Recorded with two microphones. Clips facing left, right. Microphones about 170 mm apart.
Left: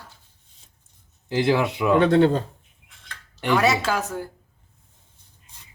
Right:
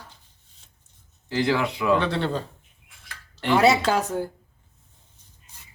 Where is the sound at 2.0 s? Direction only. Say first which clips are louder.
Left 9 dB; 45° left (ahead or behind).